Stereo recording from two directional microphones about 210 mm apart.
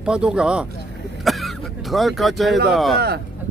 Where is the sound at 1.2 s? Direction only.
Centre (ahead or behind).